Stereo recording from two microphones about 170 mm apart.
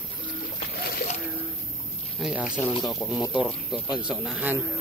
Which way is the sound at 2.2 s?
5° right (ahead or behind).